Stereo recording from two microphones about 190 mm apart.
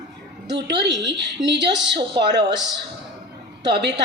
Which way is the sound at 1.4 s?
65° right (ahead or behind).